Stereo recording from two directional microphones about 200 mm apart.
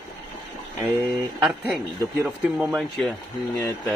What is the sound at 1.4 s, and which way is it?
Speech, 5° right (ahead or behind).